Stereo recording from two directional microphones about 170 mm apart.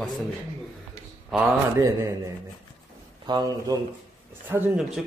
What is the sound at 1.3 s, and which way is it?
Speech, centre (ahead or behind).